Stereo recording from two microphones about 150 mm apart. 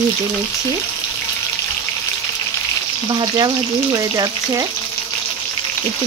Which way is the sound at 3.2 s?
25° right (ahead or behind).